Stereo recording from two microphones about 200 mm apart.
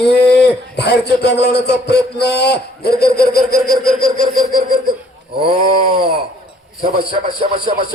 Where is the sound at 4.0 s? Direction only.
50° left (ahead or behind).